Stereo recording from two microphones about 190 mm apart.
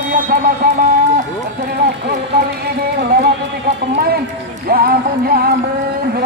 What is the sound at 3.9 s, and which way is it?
Speech, 55° right (ahead or behind).